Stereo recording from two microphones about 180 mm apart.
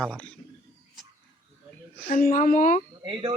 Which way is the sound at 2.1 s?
50° left (ahead or behind).